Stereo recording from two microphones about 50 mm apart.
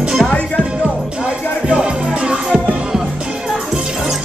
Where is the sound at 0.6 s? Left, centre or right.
Right.